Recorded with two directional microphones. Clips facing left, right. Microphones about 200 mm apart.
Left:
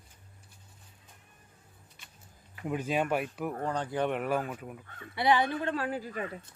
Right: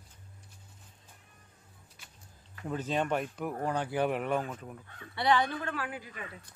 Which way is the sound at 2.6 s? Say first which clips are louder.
Left 2 dB; 10° left (ahead or behind).